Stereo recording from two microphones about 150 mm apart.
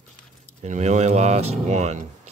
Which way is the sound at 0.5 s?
55° right (ahead or behind).